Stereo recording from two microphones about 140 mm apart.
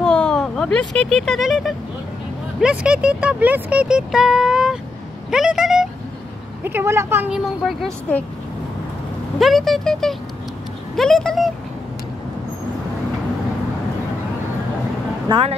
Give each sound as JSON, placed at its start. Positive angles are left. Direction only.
{"t": 0.0, "sound": "speech", "side_deg": 5}
{"t": 6.6, "sound": "speech", "side_deg": -15}
{"t": 7.2, "sound": "speech", "side_deg": 0}
{"t": 9.4, "sound": "speech", "side_deg": 0}
{"t": 15.2, "sound": "speech", "side_deg": -40}